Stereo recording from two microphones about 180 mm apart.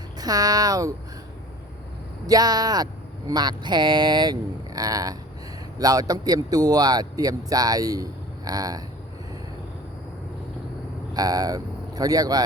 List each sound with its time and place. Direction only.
0.2 s speech: 20° right (ahead or behind)
2.2 s speech: 20° right (ahead or behind)
11.1 s speech: 20° right (ahead or behind)